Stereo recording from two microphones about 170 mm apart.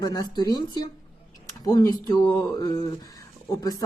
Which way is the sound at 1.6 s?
20° left (ahead or behind).